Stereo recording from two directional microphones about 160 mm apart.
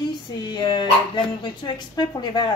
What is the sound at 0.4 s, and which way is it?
Speech, 30° left (ahead or behind).